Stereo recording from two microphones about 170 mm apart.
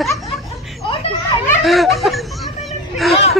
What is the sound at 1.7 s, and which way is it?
Speech, centre (ahead or behind).